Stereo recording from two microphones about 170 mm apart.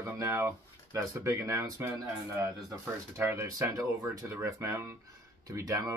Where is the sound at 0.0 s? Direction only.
15° right (ahead or behind).